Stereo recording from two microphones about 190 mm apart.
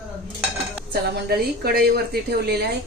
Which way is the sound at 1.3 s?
55° right (ahead or behind).